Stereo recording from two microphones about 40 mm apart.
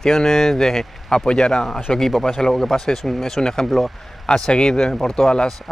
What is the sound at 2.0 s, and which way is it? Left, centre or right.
Speech, centre.